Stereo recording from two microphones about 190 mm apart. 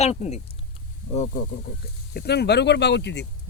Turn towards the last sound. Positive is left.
turn(degrees=65)  # may be behind; listen again after turning